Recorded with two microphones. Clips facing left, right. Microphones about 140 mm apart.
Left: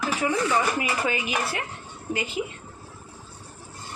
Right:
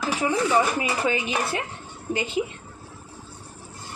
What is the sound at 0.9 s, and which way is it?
Speech, 25° right (ahead or behind).